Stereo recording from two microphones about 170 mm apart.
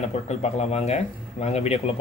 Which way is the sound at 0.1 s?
40° left (ahead or behind).